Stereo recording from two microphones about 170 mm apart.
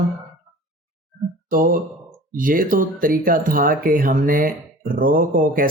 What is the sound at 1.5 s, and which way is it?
Speech, 55° right (ahead or behind).